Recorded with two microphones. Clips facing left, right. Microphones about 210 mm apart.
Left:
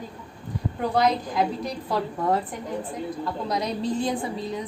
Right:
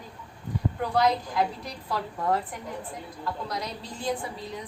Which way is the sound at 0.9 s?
20° left (ahead or behind).